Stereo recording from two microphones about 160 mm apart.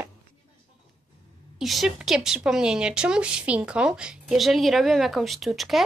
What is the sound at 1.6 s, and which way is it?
Speech, centre (ahead or behind).